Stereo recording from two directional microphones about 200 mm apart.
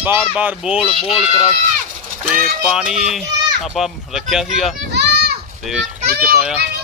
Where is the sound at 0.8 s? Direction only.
25° left (ahead or behind).